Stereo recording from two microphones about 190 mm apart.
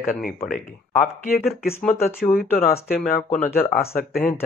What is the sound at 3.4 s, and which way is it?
Speech, 40° left (ahead or behind).